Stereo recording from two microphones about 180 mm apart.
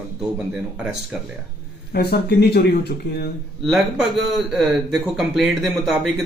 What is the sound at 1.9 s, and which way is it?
Speech, 65° left (ahead or behind).